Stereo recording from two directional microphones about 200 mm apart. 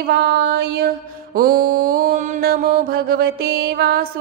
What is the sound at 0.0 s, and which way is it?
Mantra, 55° right (ahead or behind).